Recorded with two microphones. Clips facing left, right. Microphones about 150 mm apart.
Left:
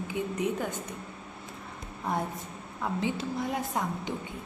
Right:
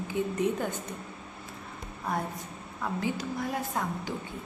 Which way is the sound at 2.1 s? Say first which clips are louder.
Left 1 dB; 20° left (ahead or behind).